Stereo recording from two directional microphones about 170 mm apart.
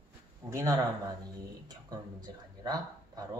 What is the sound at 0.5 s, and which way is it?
Speech, 20° right (ahead or behind).